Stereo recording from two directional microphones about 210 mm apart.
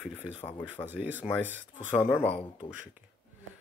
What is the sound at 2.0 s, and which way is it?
Speech, 10° left (ahead or behind).